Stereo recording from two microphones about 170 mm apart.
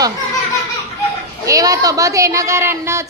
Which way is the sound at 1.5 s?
20° right (ahead or behind).